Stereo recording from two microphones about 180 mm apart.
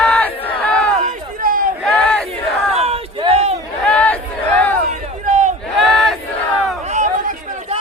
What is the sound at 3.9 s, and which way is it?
Battle cry, 5° left (ahead or behind).